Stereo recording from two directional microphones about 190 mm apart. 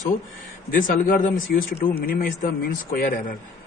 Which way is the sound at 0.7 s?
45° left (ahead or behind).